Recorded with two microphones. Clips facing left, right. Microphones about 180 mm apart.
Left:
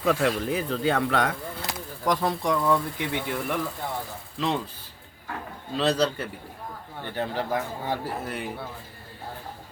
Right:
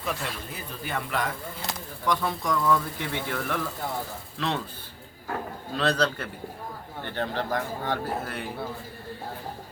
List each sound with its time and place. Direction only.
0.0 s speech: 90° left; by 1.4 s 75° left (ahead or behind)
2.0 s speech: 35° left (ahead or behind)
3.1 s speech: 10° left (ahead or behind)
5.7 s speech: 10° left (ahead or behind)